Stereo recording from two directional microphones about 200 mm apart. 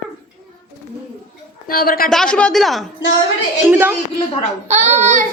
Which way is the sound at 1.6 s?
45° left (ahead or behind).